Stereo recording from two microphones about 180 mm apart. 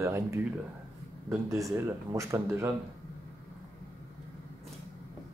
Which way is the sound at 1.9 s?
15° right (ahead or behind).